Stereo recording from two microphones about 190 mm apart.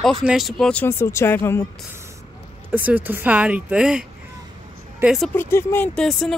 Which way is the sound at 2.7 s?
10° right (ahead or behind).